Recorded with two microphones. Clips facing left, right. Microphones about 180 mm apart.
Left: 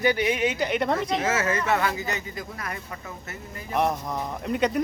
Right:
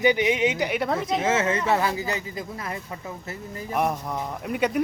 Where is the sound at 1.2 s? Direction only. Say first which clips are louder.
Right 2 dB; 25° right (ahead or behind).